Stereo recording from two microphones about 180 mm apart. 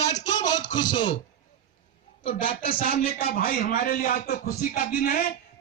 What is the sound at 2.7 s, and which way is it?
A man's voice, 50° left (ahead or behind).